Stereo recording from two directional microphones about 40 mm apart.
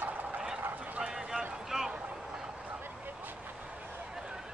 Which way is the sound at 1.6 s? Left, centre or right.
Centre.